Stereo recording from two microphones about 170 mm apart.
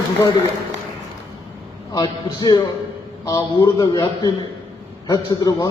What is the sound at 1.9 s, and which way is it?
A man's voice, 20° left (ahead or behind).